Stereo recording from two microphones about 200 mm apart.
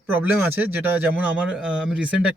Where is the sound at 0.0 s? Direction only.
10° right (ahead or behind).